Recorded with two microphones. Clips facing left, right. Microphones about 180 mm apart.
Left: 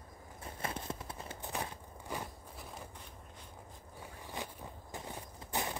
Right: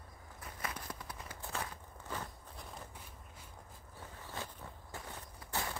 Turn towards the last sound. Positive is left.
turn(degrees=20)  # may be behind; listen again after turning